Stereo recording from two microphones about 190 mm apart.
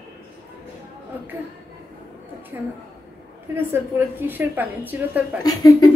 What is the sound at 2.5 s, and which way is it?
A woman's voice, 10° right (ahead or behind).